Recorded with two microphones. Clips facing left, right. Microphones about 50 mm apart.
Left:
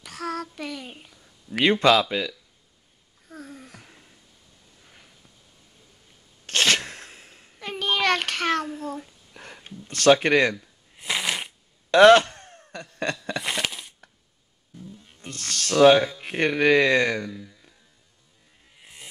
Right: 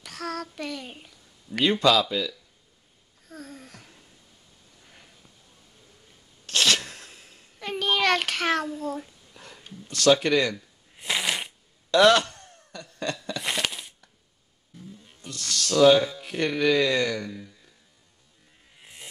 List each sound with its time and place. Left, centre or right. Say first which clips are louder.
0.0 s a sound: left 2 dB; centre
1.6 s speech: left 2 dB; left
3.3 s a sound: left 1 dB; centre
6.4 s sneeze: left 2 dB; left
7.5 s child singing: even; centre
8.7 s a child's voice: right 1 dB; centre
9.3 s speech: left 3 dB; left
10.5 s shuffling cards: left 2 dB; centre
11.9 s gasp: left 5 dB; left
13.4 s a sound: left 1 dB; centre
15.2 s speech: even; left
18.8 s a sound: even; centre